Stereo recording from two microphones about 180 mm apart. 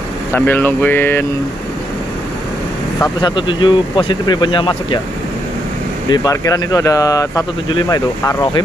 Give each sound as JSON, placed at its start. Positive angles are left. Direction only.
{"t": 0.3, "sound": "speech", "side_deg": 10}
{"t": 3.0, "sound": "speech", "side_deg": 20}
{"t": 6.0, "sound": "speech", "side_deg": 20}